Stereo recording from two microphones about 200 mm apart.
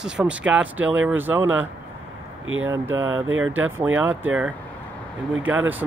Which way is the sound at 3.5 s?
10° right (ahead or behind).